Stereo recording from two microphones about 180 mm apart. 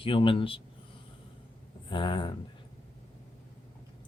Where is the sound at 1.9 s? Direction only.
25° left (ahead or behind).